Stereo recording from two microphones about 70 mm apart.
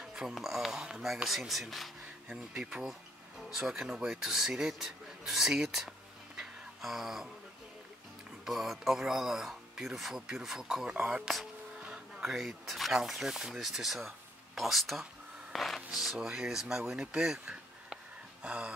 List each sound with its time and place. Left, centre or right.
0.0 s speech: centre
2.2 s speech: centre
6.3 s a sound: centre
8.5 s speech: centre